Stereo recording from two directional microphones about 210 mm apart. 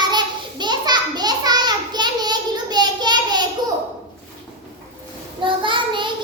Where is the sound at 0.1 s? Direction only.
20° right (ahead or behind).